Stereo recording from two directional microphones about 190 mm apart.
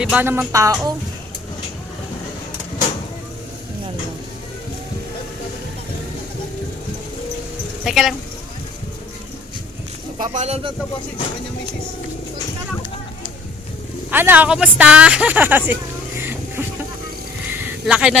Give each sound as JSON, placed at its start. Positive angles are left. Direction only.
{"t": 0.0, "sound": "speech", "side_deg": -5}
{"t": 7.9, "sound": "speech", "side_deg": 0}
{"t": 10.2, "sound": "speech", "side_deg": -40}
{"t": 14.1, "sound": "speech", "side_deg": -10}
{"t": 17.5, "sound": "a sound", "side_deg": -10}